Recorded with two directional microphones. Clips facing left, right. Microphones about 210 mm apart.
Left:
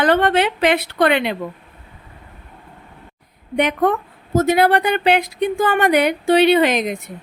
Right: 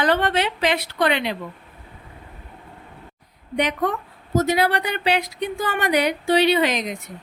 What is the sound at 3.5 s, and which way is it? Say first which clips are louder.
A woman's voice: left 5 dB; 55° left (ahead or behind).